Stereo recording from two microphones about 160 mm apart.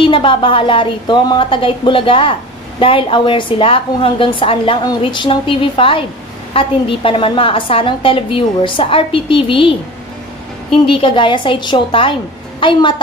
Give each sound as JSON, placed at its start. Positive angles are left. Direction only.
{"t": 0.0, "sound": "a woman's voice", "side_deg": 30}